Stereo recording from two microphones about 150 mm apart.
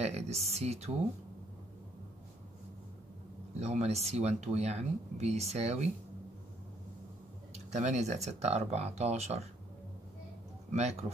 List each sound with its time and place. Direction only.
0.0 s speech: 45° right (ahead or behind)
3.5 s speech: 45° right (ahead or behind)
7.7 s speech: 50° right (ahead or behind)
10.7 s speech: 45° right (ahead or behind)